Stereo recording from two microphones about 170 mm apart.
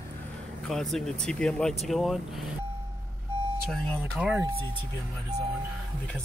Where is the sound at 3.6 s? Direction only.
5° left (ahead or behind).